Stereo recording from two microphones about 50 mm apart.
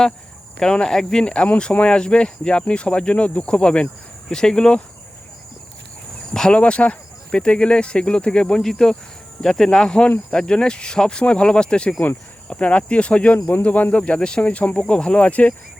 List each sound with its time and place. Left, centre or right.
0.6 s speech: centre
6.5 s speech: left